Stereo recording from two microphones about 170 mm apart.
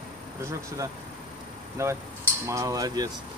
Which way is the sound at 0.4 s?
15° right (ahead or behind).